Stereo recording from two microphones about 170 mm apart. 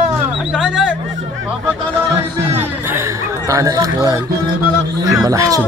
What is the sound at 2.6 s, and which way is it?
A man's voice, 15° right (ahead or behind).